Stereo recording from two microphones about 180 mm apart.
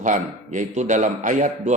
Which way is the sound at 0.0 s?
45° right (ahead or behind).